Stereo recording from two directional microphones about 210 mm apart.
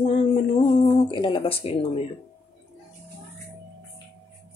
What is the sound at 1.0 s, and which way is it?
Speech, 25° left (ahead or behind).